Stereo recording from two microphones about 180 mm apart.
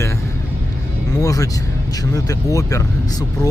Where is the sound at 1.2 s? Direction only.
20° left (ahead or behind).